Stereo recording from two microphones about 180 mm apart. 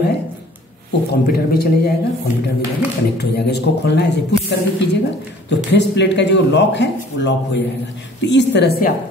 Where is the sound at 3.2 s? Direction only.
65° left (ahead or behind).